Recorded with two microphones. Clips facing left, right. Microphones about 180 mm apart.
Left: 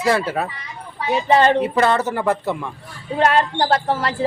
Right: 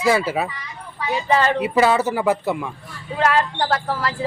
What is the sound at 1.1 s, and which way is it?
Speech, 25° left (ahead or behind).